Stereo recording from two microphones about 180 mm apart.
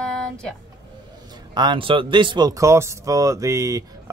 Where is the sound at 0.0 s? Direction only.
5° left (ahead or behind).